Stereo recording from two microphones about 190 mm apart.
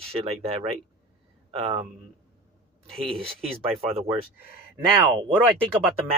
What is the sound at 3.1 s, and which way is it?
A man's voice, 30° right (ahead or behind).